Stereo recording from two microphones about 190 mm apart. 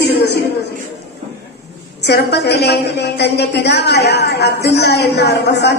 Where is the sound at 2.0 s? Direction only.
60° left (ahead or behind).